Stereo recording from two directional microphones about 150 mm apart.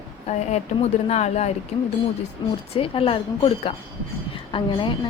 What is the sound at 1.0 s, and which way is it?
Speech, 50° left (ahead or behind).